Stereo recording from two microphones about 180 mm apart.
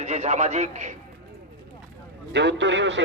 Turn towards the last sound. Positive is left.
turn(degrees=-90)